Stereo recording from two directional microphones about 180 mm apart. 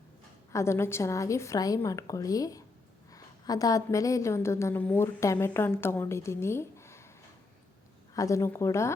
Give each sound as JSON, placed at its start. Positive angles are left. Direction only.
{"t": 0.5, "sound": "a woman's voice", "side_deg": 15}
{"t": 8.1, "sound": "a woman's voice", "side_deg": 15}